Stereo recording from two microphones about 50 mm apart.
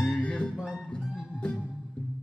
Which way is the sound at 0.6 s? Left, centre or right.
Centre.